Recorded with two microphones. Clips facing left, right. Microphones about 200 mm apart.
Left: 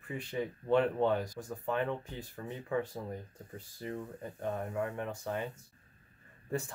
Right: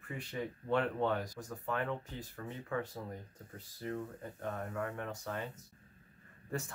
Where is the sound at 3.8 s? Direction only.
15° left (ahead or behind).